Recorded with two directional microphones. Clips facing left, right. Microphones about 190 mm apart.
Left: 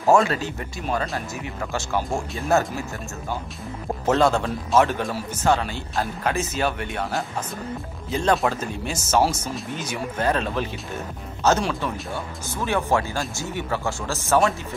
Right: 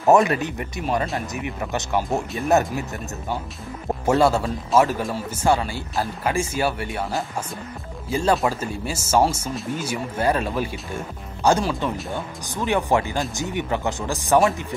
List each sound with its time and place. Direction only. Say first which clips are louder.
0.0 s speech: right 2 dB; 20° right (ahead or behind)
4.0 s speech: right 1 dB; 10° right (ahead or behind)
12.6 s speech: right 2 dB; 15° right (ahead or behind)